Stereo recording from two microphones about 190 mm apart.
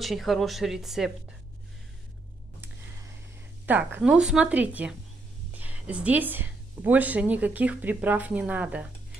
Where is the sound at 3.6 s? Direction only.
10° right (ahead or behind).